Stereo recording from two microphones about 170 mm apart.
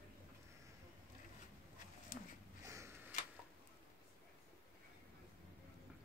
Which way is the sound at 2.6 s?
15° right (ahead or behind).